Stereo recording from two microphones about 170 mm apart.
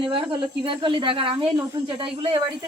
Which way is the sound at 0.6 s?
30° right (ahead or behind).